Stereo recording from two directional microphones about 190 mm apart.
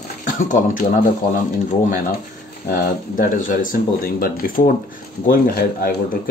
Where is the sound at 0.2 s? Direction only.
45° left (ahead or behind).